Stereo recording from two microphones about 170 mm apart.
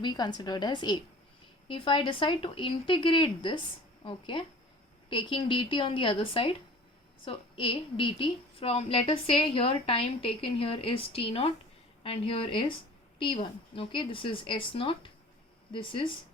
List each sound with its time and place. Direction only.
0.0 s a woman's voice: 25° left (ahead or behind)